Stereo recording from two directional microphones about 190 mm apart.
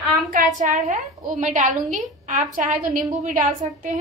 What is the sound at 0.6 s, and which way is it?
A woman's voice, 40° right (ahead or behind).